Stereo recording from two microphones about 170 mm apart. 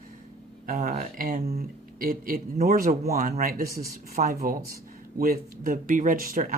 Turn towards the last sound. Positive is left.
turn(degrees=-55)  # may be behind; listen again after turning